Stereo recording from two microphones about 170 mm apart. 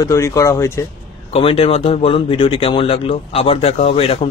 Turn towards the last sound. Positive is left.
turn(degrees=35)  # may be behind; listen again after turning